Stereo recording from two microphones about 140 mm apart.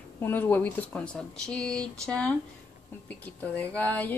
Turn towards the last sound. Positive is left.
turn(degrees=10)  # may be behind; listen again after turning